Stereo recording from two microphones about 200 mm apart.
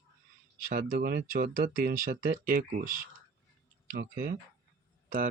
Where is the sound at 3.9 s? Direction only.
45° right (ahead or behind).